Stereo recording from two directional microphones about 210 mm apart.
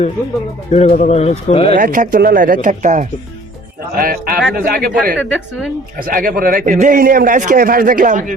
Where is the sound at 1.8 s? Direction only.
40° right (ahead or behind).